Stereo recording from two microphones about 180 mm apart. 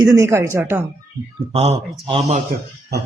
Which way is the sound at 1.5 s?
35° right (ahead or behind).